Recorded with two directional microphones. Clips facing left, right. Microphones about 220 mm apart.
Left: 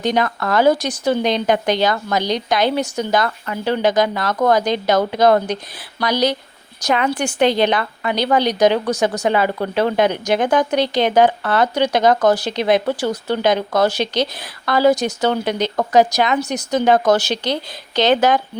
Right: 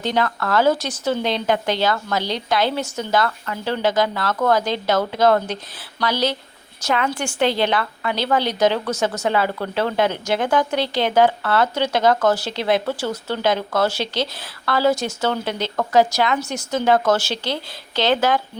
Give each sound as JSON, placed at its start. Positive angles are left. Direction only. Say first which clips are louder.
{"t": 0.0, "sound": "a woman's voice", "louder": "left 3 dB", "side_deg": 15}